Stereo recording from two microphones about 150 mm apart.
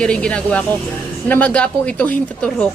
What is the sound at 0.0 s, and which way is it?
A woman's voice, 5° left (ahead or behind).